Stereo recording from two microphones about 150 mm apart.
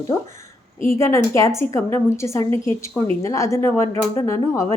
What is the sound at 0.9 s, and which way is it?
A woman's voice, 20° left (ahead or behind).